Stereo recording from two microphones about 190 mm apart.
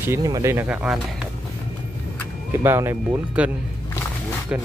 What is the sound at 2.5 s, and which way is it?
Speech, 15° right (ahead or behind).